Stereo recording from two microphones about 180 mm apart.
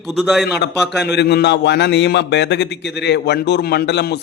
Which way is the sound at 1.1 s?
70° left (ahead or behind).